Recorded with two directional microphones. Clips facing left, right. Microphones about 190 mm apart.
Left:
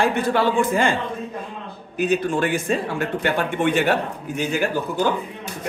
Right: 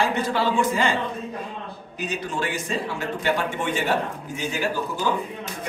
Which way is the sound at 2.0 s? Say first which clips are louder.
Left 8 dB; 55° left (ahead or behind).